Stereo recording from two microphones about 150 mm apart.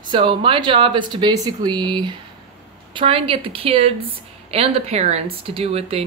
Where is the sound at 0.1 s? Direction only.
35° right (ahead or behind).